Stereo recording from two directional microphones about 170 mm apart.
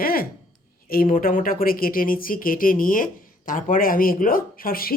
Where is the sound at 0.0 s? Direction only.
60° left (ahead or behind).